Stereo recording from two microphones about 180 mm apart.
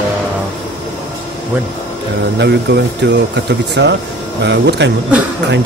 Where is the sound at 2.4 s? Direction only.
70° right (ahead or behind).